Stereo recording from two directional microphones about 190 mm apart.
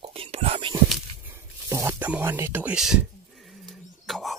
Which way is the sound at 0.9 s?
10° right (ahead or behind).